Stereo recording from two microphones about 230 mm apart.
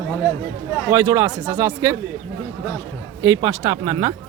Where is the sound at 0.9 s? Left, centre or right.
Centre.